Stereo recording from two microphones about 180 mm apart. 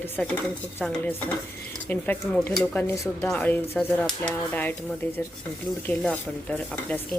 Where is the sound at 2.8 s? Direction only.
15° left (ahead or behind).